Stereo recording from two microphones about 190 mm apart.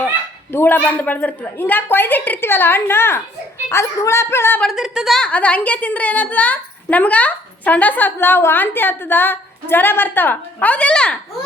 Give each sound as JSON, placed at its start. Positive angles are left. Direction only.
{"t": 0.5, "sound": "a woman's voice", "side_deg": 10}
{"t": 4.7, "sound": "a woman's voice", "side_deg": 0}